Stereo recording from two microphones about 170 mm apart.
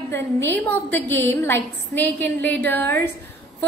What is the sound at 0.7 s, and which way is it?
Speech, 10° left (ahead or behind).